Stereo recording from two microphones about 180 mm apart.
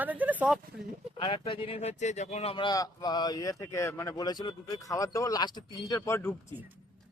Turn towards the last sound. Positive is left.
turn(degrees=15)  # may be behind; listen again after turning